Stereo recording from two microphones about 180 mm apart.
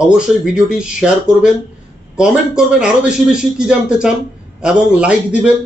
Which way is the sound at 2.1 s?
5° right (ahead or behind).